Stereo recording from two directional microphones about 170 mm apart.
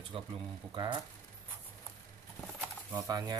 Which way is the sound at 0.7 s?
25° right (ahead or behind).